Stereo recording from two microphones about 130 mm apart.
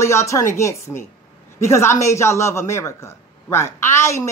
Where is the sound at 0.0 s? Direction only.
20° left (ahead or behind).